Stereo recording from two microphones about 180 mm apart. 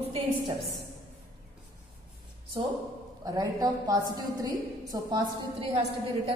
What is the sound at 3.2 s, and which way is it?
A woman's voice, 20° right (ahead or behind).